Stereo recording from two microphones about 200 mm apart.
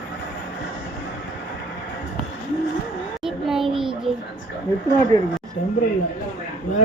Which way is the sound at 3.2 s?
Centre (ahead or behind).